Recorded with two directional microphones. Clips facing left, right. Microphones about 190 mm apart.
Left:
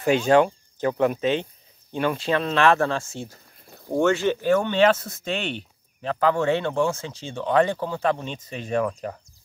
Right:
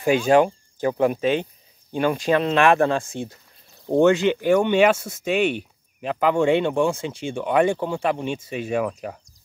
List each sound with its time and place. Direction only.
0.0 s speech: 10° right (ahead or behind)